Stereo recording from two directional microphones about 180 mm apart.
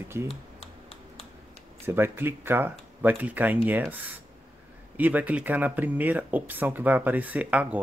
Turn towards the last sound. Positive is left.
turn(degrees=-10)  # may be behind; listen again after turning